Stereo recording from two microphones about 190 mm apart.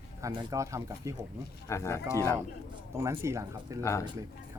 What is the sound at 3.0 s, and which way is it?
Speech, 15° right (ahead or behind).